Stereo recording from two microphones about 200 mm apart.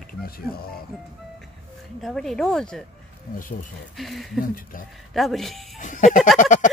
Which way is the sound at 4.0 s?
Centre (ahead or behind).